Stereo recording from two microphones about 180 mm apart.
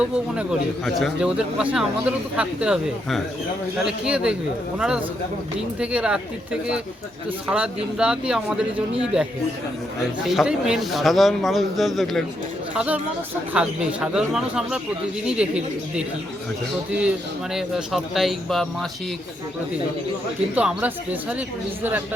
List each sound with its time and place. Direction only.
0.9 s speech: centre (ahead or behind)
20.6 s speech: 10° right (ahead or behind)